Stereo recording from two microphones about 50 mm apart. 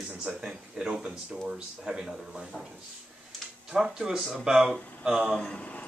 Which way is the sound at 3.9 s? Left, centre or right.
Centre.